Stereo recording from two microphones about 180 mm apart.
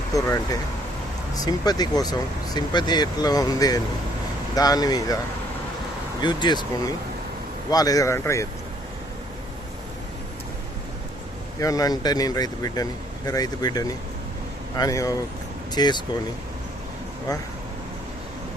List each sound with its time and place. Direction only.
0.1 s speech: 20° left (ahead or behind)
6.2 s speech: 25° left (ahead or behind)
11.6 s speech: 20° left (ahead or behind)